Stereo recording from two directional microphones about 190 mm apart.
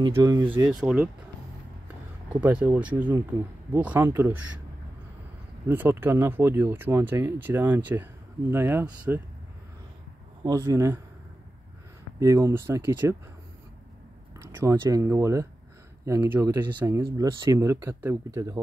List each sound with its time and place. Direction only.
0.0 s speech: 20° right (ahead or behind)
0.7 s speech: 5° right (ahead or behind)
2.2 s speech: 5° right (ahead or behind)
5.7 s speech: 10° right (ahead or behind)
10.4 s speech: 20° right (ahead or behind)
12.2 s speech: 15° right (ahead or behind)
14.4 s speech: 15° right (ahead or behind)